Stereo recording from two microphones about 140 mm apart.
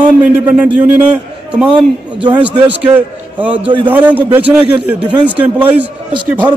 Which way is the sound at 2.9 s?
10° right (ahead or behind).